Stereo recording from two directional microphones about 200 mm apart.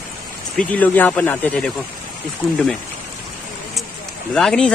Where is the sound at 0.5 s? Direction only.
5° left (ahead or behind).